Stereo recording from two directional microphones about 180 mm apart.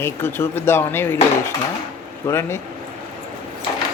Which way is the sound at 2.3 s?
15° left (ahead or behind).